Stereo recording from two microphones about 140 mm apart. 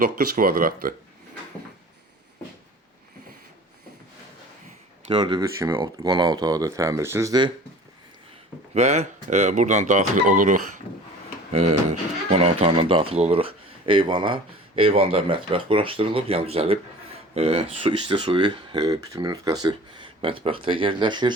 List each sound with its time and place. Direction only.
0.0 s speech: 90° right
5.0 s speech: 35° right (ahead or behind)
5.8 s speech: 30° right (ahead or behind)
8.7 s speech: 55° right (ahead or behind); by 10.6 s 70° right (ahead or behind)
11.5 s speech: 50° right (ahead or behind); by 20.1 s 30° right (ahead or behind)
20.2 s speech: 40° right (ahead or behind)